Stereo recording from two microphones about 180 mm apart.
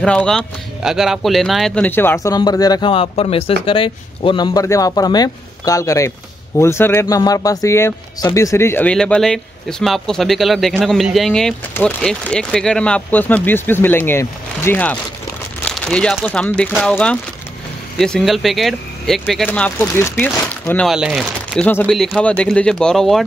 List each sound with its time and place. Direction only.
0.0 s speech: 5° left (ahead or behind)
1.9 s speech: 10° left (ahead or behind)